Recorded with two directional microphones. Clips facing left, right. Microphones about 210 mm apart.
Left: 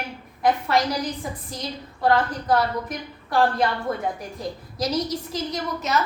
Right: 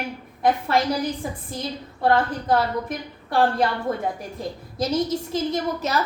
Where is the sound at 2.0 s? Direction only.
25° right (ahead or behind).